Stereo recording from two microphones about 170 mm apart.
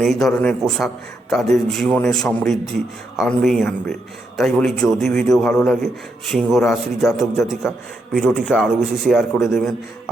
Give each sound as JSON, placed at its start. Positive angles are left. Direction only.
{"t": 0.0, "sound": "a man's voice", "side_deg": 0}